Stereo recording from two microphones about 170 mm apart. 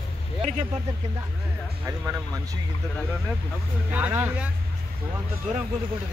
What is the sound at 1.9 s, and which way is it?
Speech, 20° right (ahead or behind).